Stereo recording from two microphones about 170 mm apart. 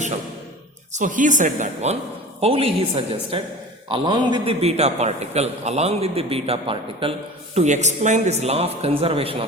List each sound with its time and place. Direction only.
0.9 s a man's voice: 50° right (ahead or behind); by 9.5 s 35° right (ahead or behind)